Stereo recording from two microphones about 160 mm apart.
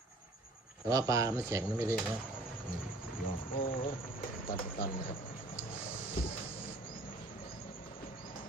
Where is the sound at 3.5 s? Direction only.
60° left (ahead or behind).